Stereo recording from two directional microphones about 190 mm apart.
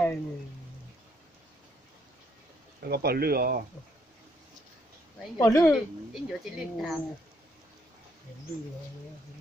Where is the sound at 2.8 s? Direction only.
55° right (ahead or behind).